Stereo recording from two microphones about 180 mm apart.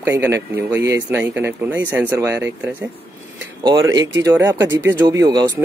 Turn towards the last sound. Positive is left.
turn(degrees=-25)  # may be behind; listen again after turning